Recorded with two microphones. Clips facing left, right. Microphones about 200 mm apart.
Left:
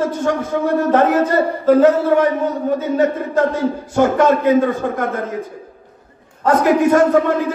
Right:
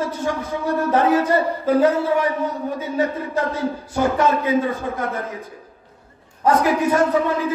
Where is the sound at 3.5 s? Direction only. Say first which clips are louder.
Left 6 dB; 50° left (ahead or behind).